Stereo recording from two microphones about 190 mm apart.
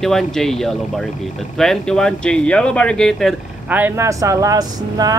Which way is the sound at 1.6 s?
5° left (ahead or behind).